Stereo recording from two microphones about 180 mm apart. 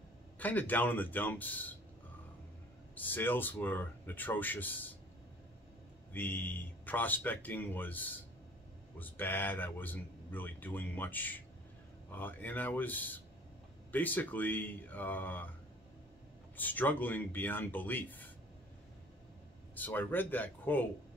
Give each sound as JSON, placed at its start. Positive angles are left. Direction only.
{"t": 0.4, "sound": "speech", "side_deg": 10}
{"t": 2.9, "sound": "speech", "side_deg": 10}
{"t": 6.1, "sound": "speech", "side_deg": 10}
{"t": 16.5, "sound": "speech", "side_deg": 10}
{"t": 19.7, "sound": "speech", "side_deg": 10}